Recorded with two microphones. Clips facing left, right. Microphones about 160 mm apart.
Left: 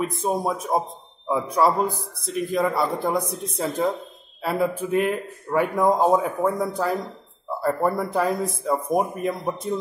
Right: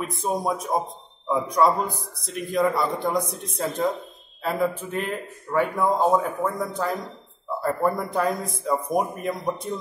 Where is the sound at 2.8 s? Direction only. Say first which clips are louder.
Left 1 dB; 30° left (ahead or behind).